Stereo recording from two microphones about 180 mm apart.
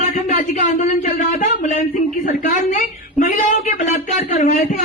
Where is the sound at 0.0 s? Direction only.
40° left (ahead or behind).